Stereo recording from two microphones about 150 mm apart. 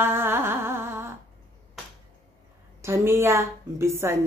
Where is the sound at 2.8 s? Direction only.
15° right (ahead or behind).